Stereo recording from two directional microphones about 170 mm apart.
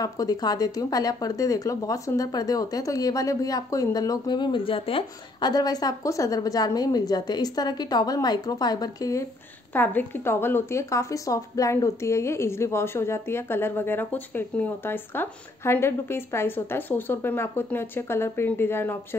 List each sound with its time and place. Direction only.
0.0 s speech: 20° left (ahead or behind)
9.7 s a woman's voice: 10° left (ahead or behind)